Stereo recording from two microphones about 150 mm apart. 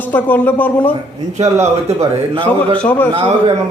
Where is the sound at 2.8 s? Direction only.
10° left (ahead or behind).